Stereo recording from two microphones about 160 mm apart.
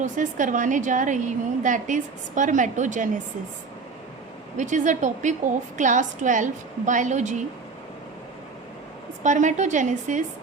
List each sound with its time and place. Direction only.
0.0 s a woman's voice: 55° right (ahead or behind)
4.5 s a woman's voice: 50° right (ahead or behind)
9.2 s a woman's voice: 50° right (ahead or behind)